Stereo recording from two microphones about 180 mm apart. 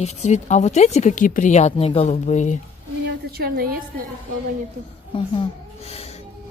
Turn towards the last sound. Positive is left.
turn(degrees=35)  # may be behind; listen again after turning